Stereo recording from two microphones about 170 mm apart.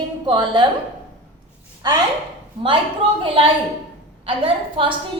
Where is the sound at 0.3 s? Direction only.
25° right (ahead or behind).